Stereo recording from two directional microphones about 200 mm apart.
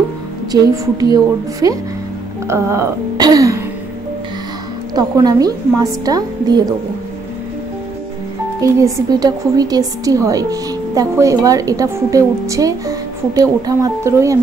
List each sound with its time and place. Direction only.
0.5 s a woman's voice: 20° right (ahead or behind)
4.9 s a woman's voice: 20° right (ahead or behind)
8.5 s a woman's voice: 15° right (ahead or behind)